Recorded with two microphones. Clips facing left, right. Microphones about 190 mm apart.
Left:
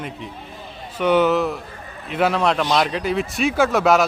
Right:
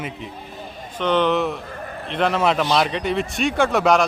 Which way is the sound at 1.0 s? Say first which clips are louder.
Left 2 dB; 10° left (ahead or behind).